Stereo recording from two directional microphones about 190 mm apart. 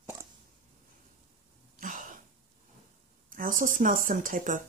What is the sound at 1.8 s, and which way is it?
Throat clearing, 45° right (ahead or behind).